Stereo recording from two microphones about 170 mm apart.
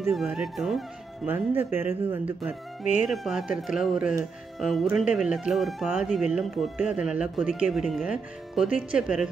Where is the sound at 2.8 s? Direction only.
45° left (ahead or behind).